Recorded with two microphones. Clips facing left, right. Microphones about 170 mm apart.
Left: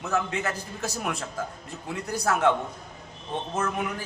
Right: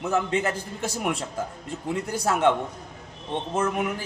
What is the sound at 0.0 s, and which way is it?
A man's voice, 15° right (ahead or behind).